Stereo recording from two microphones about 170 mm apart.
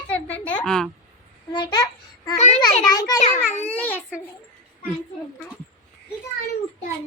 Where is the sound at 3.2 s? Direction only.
40° left (ahead or behind).